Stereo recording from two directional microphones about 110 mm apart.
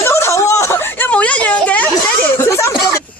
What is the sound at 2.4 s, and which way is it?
Speech, 25° left (ahead or behind).